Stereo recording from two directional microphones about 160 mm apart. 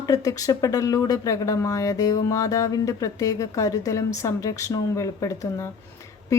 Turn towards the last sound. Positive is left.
turn(degrees=20)  # may be behind; listen again after turning